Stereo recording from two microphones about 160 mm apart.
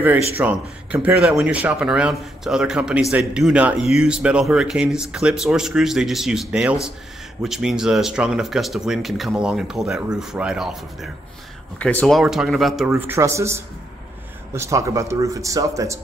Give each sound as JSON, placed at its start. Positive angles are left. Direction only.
{"t": 0.4, "sound": "speech", "side_deg": -10}
{"t": 11.8, "sound": "speech", "side_deg": 10}
{"t": 12.2, "sound": "speech", "side_deg": 0}
{"t": 13.0, "sound": "speech", "side_deg": -15}